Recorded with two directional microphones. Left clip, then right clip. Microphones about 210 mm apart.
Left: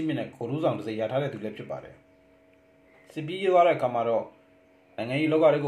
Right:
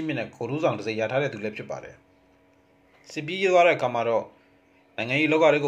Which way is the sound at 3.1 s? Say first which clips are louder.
Right 2 dB; 20° right (ahead or behind).